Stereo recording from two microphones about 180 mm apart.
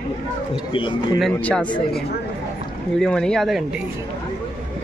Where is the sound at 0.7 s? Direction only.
25° left (ahead or behind).